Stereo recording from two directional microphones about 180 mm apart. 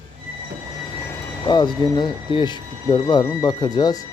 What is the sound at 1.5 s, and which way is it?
Speech, 25° left (ahead or behind).